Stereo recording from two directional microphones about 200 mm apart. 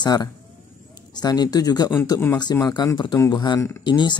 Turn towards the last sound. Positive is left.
turn(degrees=20)  # may be behind; listen again after turning